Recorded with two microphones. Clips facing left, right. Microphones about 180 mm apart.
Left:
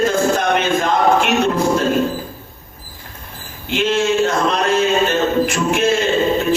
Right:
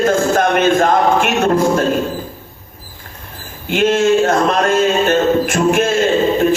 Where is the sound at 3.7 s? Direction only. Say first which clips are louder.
Right 4 dB; 50° right (ahead or behind).